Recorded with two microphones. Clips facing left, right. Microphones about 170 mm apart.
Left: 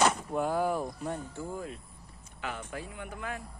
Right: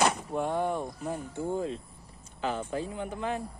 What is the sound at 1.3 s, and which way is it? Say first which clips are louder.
Speech: right 7 dB; 30° right (ahead or behind).